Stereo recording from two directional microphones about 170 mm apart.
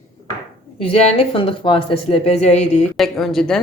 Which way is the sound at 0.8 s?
35° left (ahead or behind).